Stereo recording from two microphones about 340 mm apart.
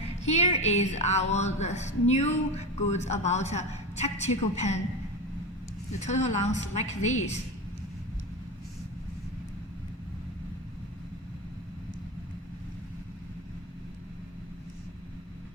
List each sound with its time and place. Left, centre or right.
0.3 s a woman's voice: centre
6.0 s a woman's voice: centre